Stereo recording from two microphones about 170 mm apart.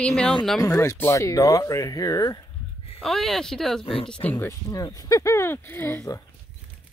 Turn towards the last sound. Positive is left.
turn(degrees=15)  # may be behind; listen again after turning